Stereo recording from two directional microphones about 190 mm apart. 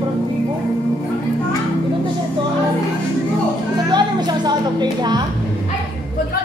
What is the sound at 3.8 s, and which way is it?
Music, 20° right (ahead or behind).